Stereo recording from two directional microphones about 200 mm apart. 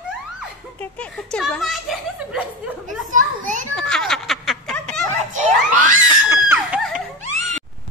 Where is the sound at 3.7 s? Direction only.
5° left (ahead or behind).